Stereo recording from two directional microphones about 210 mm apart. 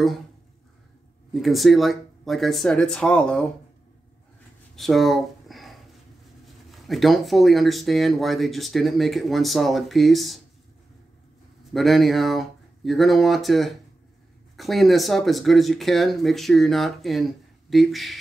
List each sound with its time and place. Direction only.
1.3 s speech: centre (ahead or behind)
4.7 s a sound: centre (ahead or behind)
6.7 s speech: centre (ahead or behind)
11.7 s speech: centre (ahead or behind)